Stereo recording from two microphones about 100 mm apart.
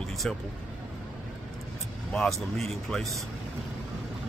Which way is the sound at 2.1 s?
5° left (ahead or behind).